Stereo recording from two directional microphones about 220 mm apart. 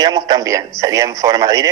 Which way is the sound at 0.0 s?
20° right (ahead or behind).